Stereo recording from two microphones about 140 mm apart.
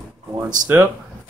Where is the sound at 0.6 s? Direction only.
15° right (ahead or behind).